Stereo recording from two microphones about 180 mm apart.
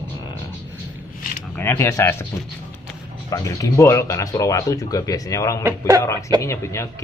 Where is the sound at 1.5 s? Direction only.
15° left (ahead or behind).